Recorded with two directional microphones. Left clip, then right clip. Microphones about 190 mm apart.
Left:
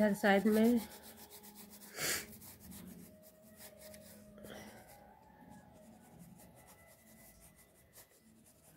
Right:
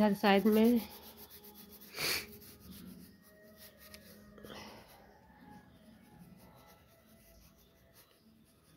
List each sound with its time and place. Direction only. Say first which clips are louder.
0.0 s speech: right 2 dB; 25° right (ahead or behind)
1.9 s gasp: right 3 dB; 20° right (ahead or behind)